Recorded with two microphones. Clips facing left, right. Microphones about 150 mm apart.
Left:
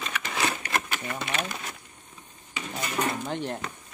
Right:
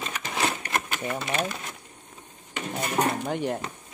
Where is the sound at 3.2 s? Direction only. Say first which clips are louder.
Right 3 dB; 10° right (ahead or behind).